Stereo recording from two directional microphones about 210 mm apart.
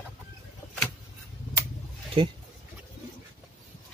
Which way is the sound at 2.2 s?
25° right (ahead or behind).